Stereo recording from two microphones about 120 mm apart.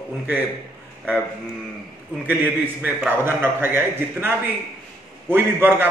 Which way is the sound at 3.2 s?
20° right (ahead or behind).